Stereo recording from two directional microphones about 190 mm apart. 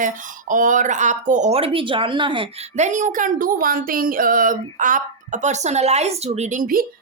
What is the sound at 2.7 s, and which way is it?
A woman's voice, 40° right (ahead or behind).